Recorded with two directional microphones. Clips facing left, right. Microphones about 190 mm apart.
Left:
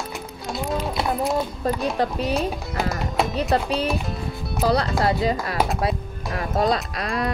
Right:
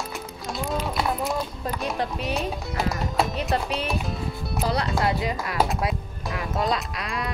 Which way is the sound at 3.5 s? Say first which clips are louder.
Left 4 dB; 35° left (ahead or behind).